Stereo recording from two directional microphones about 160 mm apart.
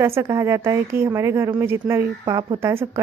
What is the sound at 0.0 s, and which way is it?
Speech, 15° right (ahead or behind).